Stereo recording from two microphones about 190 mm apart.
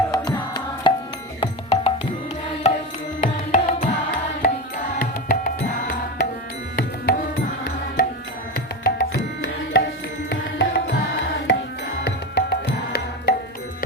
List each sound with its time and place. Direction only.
0.1 s music: 20° left (ahead or behind); by 5.5 s 50° left (ahead or behind)
6.7 s music: 55° left (ahead or behind)
8.5 s tabla: 60° left (ahead or behind)
10.2 s music: 65° left (ahead or behind)